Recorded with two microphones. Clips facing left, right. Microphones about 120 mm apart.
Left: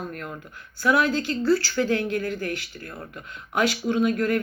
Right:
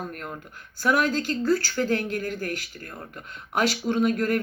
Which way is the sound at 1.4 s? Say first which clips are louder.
Left 3 dB; 45° right (ahead or behind).